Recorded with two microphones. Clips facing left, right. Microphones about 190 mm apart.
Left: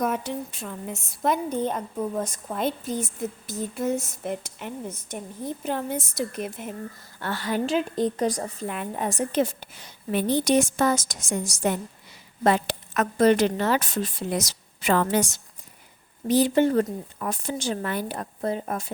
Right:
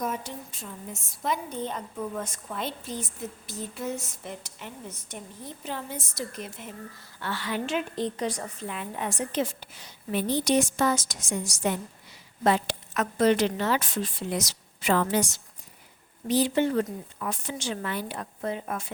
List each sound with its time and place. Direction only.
0.0 s a woman's voice: 65° left (ahead or behind)
2.0 s a woman's voice: 35° left (ahead or behind)
8.6 s a woman's voice: 50° left (ahead or behind)